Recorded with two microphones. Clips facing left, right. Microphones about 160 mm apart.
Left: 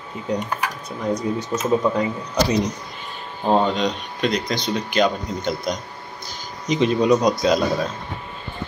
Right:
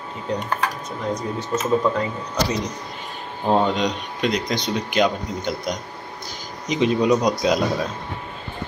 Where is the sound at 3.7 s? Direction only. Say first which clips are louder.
Even; 15° right (ahead or behind).